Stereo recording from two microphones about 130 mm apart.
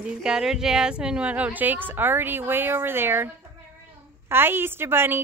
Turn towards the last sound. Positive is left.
turn(degrees=-15)  # may be behind; listen again after turning